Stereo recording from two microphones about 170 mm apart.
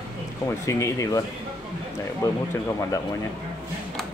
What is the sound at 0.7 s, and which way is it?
Speech, 15° left (ahead or behind).